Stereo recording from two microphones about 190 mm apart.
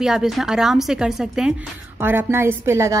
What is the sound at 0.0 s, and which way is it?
A woman's voice, 5° right (ahead or behind).